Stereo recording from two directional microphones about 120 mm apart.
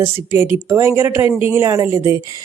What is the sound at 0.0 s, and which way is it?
Speech, 20° right (ahead or behind).